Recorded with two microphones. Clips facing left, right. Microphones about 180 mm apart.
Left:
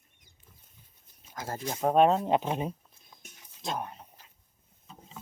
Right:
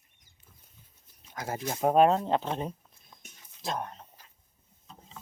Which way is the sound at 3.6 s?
5° left (ahead or behind).